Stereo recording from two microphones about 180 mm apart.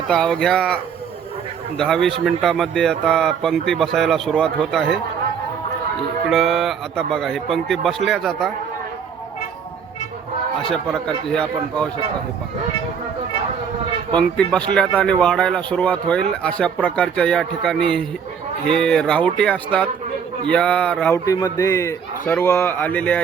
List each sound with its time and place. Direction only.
0.1 s speech: 5° left (ahead or behind)
1.8 s speech: 5° left (ahead or behind)
6.3 s speech: centre (ahead or behind)
10.7 s speech: 5° left (ahead or behind)
14.2 s speech: 5° left (ahead or behind)
21.2 s speech: 20° left (ahead or behind)